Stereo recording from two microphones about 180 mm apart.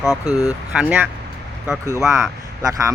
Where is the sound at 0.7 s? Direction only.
5° right (ahead or behind).